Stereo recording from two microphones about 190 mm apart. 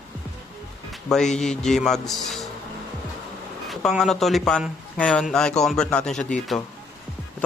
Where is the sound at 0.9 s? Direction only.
Centre (ahead or behind).